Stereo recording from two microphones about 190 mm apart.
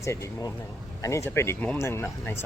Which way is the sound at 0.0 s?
15° left (ahead or behind).